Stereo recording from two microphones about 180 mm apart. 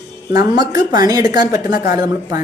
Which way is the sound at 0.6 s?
20° right (ahead or behind).